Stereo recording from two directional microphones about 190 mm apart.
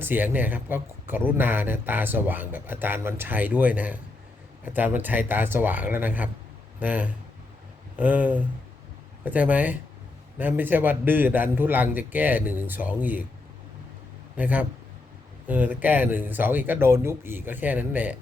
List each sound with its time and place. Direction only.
0.0 s a man's voice: 10° right (ahead or behind)
14.3 s a man's voice: 10° right (ahead or behind)